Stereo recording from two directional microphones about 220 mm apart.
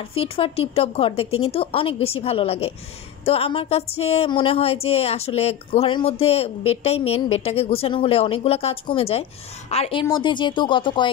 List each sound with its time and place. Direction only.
0.1 s speech: 25° left (ahead or behind)